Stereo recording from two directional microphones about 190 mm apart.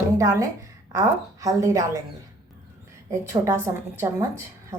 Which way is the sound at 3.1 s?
15° right (ahead or behind).